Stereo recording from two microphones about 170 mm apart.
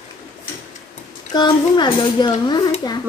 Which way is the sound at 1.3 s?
25° left (ahead or behind).